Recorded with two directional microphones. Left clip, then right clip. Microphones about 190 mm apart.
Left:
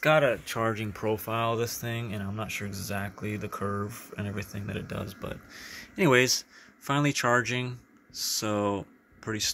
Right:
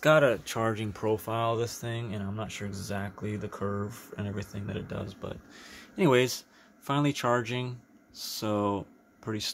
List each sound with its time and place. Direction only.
0.0 s speech: 15° right (ahead or behind)
0.6 s speech: centre (ahead or behind)